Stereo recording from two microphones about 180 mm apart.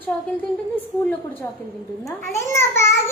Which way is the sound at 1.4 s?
15° left (ahead or behind).